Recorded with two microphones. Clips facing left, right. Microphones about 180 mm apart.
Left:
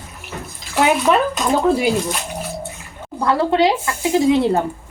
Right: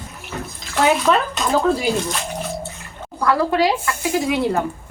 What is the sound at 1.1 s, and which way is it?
Speech, 15° left (ahead or behind).